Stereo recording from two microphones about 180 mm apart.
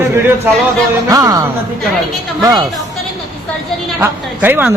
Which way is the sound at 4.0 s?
10° right (ahead or behind).